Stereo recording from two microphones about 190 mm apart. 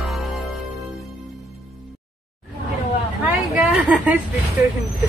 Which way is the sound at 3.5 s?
Centre (ahead or behind).